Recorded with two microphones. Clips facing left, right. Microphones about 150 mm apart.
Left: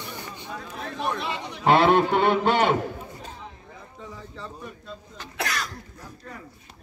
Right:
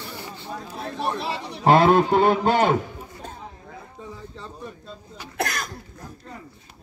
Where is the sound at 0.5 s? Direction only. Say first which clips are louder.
Right 3 dB; 35° right (ahead or behind).